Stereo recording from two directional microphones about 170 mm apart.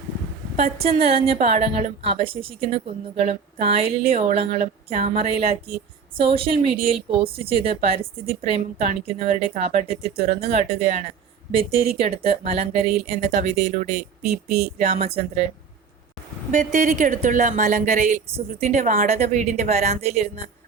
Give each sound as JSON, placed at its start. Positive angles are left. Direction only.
{"t": 0.5, "sound": "a woman's voice", "side_deg": -35}
{"t": 16.5, "sound": "a woman's voice", "side_deg": -50}
{"t": 18.3, "sound": "a woman's voice", "side_deg": -40}